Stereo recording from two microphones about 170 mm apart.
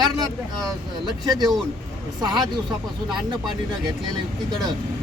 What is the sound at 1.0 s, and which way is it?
Speech, 25° right (ahead or behind).